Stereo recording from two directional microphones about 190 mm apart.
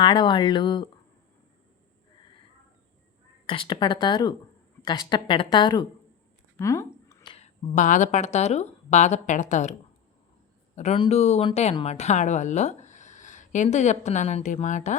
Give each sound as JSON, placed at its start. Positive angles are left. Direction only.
{"t": 0.0, "sound": "a woman's voice", "side_deg": 25}
{"t": 3.4, "sound": "a woman's voice", "side_deg": 25}
{"t": 6.6, "sound": "a sound", "side_deg": 15}
{"t": 7.3, "sound": "speech", "side_deg": 35}
{"t": 10.8, "sound": "speech", "side_deg": 35}